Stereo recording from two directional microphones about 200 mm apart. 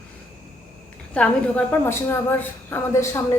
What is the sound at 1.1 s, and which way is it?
A woman's voice, 5° left (ahead or behind).